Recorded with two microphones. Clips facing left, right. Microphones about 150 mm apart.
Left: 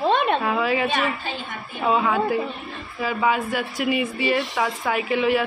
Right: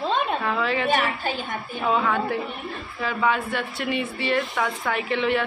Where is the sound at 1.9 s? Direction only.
10° left (ahead or behind).